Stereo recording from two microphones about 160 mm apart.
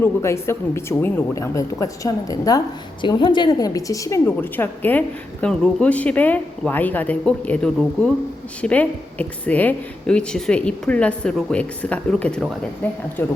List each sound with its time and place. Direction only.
0.0 s a woman's voice: 15° left (ahead or behind)